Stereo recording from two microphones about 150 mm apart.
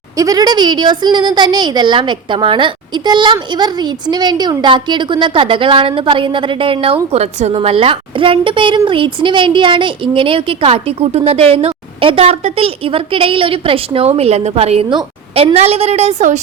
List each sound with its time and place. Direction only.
0.2 s a woman's voice: 25° right (ahead or behind)
15.5 s a woman's voice: 45° right (ahead or behind)